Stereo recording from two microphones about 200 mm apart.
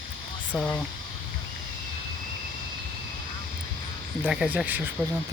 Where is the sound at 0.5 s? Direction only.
5° left (ahead or behind).